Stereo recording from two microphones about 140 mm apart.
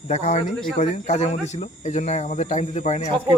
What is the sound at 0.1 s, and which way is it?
Speech, 55° left (ahead or behind).